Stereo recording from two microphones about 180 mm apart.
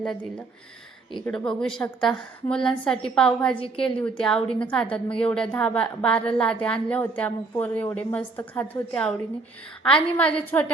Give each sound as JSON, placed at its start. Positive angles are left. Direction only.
{"t": 0.0, "sound": "a woman's voice", "side_deg": 5}
{"t": 3.5, "sound": "a woman's voice", "side_deg": 30}
{"t": 4.2, "sound": "a woman's voice", "side_deg": 5}